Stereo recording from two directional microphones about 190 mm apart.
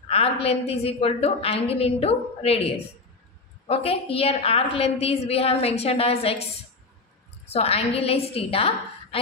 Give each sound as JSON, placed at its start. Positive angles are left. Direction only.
{"t": 0.1, "sound": "a woman's voice", "side_deg": 30}
{"t": 7.5, "sound": "a woman's voice", "side_deg": 30}